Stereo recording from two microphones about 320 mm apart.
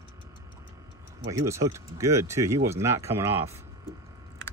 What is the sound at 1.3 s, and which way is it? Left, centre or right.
Speech, centre.